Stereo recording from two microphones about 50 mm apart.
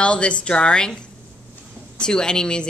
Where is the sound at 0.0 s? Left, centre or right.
Left.